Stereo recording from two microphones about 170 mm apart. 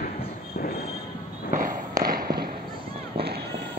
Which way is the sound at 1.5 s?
50° right (ahead or behind).